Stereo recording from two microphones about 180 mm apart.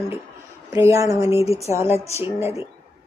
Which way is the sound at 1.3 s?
35° left (ahead or behind).